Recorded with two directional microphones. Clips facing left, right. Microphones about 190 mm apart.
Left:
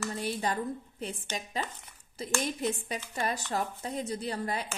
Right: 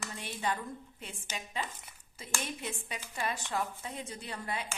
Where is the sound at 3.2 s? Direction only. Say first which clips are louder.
Left 2 dB; 40° left (ahead or behind).